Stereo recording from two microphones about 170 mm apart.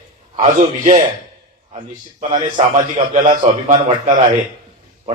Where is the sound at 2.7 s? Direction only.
50° right (ahead or behind).